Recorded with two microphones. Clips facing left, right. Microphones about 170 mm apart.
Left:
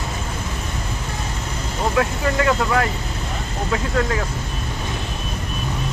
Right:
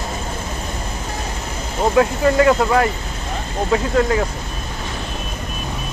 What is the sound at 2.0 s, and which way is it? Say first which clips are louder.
Speech: right 7 dB; 30° right (ahead or behind).